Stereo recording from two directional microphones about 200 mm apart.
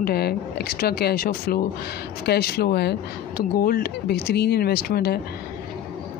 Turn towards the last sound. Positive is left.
turn(degrees=50)  # may be behind; listen again after turning